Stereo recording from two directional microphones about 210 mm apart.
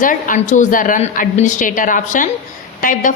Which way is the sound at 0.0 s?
40° left (ahead or behind).